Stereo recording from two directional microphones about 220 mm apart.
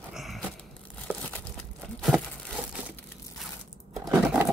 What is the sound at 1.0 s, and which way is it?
Crumpling, 5° left (ahead or behind).